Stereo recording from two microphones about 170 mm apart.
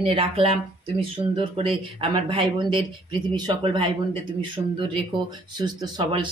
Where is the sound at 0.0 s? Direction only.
30° right (ahead or behind).